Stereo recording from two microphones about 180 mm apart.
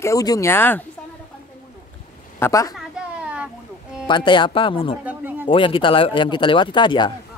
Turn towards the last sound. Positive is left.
turn(degrees=25)  # may be behind; listen again after turning